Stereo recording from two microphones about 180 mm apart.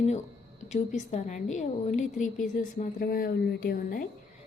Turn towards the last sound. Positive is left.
turn(degrees=50)  # may be behind; listen again after turning